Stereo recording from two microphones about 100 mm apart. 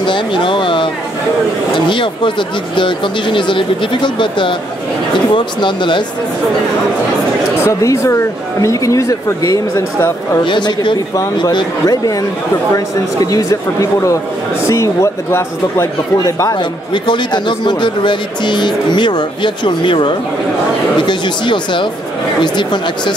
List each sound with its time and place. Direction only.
0.0 s a sound: 55° left (ahead or behind)
1.9 s speech: 55° left (ahead or behind)
7.6 s a woman's voice: 30° left (ahead or behind)
10.4 s speech: 50° left (ahead or behind)
11.5 s speech: 40° left (ahead or behind)
16.5 s speech: 50° left (ahead or behind)